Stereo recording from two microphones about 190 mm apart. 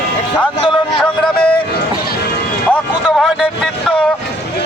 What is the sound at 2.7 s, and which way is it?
Speech, centre (ahead or behind).